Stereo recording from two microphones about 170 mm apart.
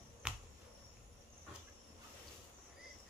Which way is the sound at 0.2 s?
5° right (ahead or behind).